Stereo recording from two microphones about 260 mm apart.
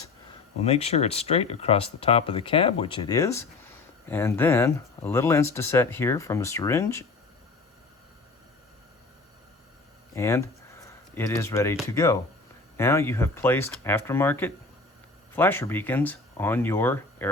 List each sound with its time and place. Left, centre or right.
0.6 s speech: left
10.2 s speech: centre